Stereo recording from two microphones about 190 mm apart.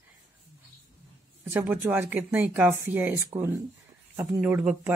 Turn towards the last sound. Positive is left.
turn(degrees=-10)  # may be behind; listen again after turning